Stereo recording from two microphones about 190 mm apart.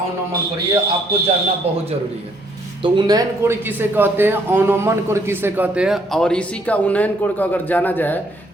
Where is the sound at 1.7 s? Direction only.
30° right (ahead or behind).